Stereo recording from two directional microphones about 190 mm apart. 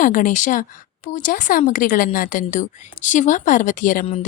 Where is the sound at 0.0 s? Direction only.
45° left (ahead or behind).